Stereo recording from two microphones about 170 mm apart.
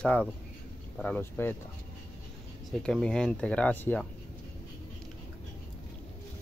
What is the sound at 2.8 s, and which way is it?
Speech, 5° left (ahead or behind).